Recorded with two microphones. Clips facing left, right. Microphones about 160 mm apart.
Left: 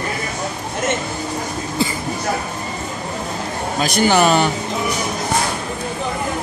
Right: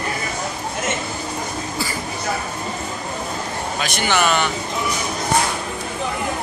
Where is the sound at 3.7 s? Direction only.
35° left (ahead or behind).